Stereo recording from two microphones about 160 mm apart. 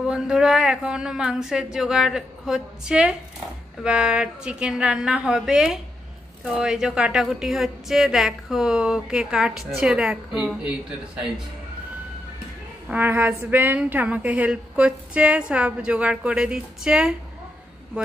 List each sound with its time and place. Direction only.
0.0 s a woman's voice: 5° right (ahead or behind)
12.8 s a woman's voice: 10° right (ahead or behind)